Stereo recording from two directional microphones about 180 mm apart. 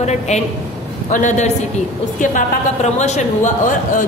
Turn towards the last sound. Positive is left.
turn(degrees=45)  # may be behind; listen again after turning